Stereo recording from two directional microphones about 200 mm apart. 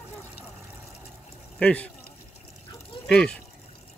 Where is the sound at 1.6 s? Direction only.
5° left (ahead or behind).